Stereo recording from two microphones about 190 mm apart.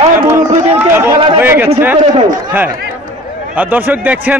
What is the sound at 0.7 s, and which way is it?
Chatter, 10° right (ahead or behind).